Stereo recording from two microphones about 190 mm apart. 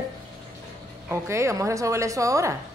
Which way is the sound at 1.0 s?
15° right (ahead or behind).